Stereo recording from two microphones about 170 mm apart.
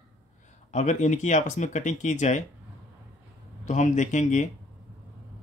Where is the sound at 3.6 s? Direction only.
45° left (ahead or behind).